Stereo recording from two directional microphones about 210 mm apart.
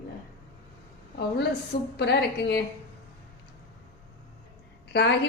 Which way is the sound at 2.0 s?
50° left (ahead or behind).